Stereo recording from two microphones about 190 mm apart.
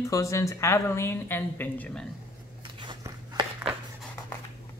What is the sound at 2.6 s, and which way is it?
Biting, 25° right (ahead or behind).